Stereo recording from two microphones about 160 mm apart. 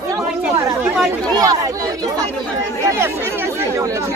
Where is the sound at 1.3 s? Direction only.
25° right (ahead or behind).